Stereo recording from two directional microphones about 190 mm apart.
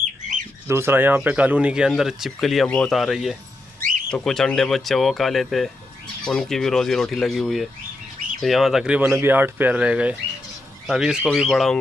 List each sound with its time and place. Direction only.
0.7 s speech: 15° right (ahead or behind)